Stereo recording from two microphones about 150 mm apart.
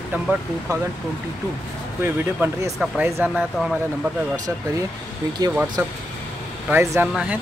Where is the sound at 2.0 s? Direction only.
15° right (ahead or behind).